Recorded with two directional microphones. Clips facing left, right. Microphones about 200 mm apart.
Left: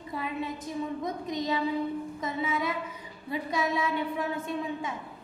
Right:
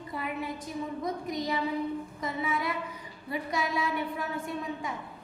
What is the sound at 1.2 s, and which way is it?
Female singing, 25° left (ahead or behind).